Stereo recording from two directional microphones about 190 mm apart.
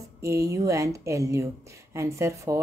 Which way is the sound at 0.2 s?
15° right (ahead or behind).